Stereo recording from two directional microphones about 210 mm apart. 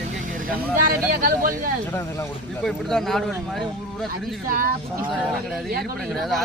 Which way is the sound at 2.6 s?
Centre (ahead or behind).